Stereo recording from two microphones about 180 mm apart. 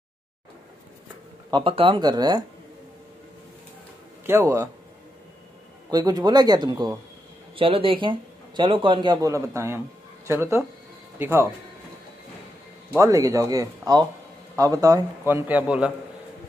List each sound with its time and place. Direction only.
1.5 s a man's voice: 30° right (ahead or behind)
4.3 s a man's voice: 15° right (ahead or behind)
5.9 s a man's voice: 20° right (ahead or behind)
12.9 s a man's voice: 20° right (ahead or behind)